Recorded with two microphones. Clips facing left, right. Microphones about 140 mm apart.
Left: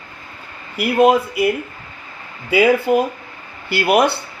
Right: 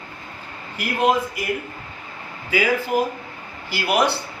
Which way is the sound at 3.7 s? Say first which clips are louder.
Left 5 dB; 60° left (ahead or behind).